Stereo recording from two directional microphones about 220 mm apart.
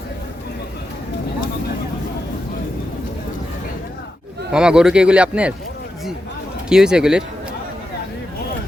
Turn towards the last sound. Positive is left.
turn(degrees=-5)  # may be behind; listen again after turning